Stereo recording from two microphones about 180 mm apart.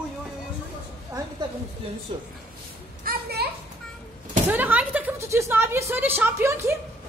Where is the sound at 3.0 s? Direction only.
60° right (ahead or behind).